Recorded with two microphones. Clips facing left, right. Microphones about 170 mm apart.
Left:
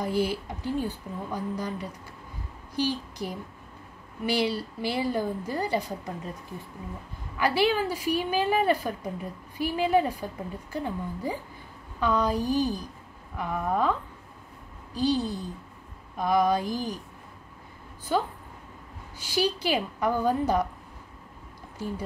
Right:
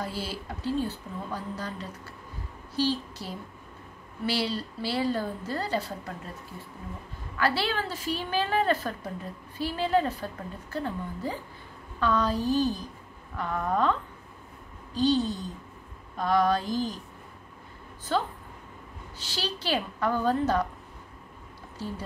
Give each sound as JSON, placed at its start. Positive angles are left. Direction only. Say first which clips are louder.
{"t": 0.0, "sound": "a woman's voice", "louder": "left 7 dB", "side_deg": 15}
{"t": 7.3, "sound": "a woman's voice", "louder": "left 4 dB", "side_deg": 15}
{"t": 15.0, "sound": "a woman's voice", "louder": "right 1 dB", "side_deg": 10}
{"t": 18.1, "sound": "a woman's voice", "louder": "left 1 dB", "side_deg": 10}
{"t": 21.7, "sound": "speech", "louder": "left 2 dB", "side_deg": 15}